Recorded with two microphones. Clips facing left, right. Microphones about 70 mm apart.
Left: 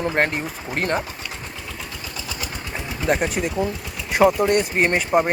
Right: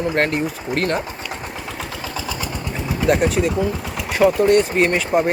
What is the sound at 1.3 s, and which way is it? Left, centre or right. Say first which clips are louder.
Engine: right 5 dB; right.